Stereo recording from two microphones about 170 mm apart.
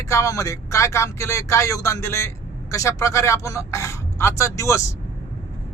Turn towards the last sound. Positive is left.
turn(degrees=15)  # may be behind; listen again after turning